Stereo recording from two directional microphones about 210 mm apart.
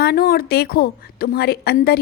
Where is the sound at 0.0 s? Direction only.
45° left (ahead or behind).